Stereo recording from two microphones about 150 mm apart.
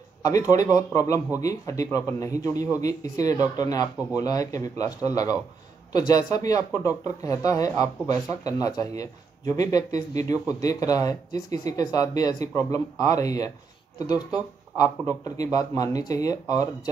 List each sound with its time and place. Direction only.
0.2 s speech: 20° left (ahead or behind)